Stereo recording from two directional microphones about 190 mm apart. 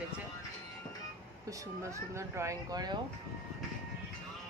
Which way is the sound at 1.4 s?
15° right (ahead or behind).